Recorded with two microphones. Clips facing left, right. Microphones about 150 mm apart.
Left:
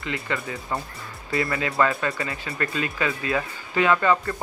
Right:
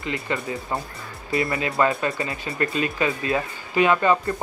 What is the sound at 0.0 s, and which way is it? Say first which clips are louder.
Speech: right 2 dB; 20° right (ahead or behind).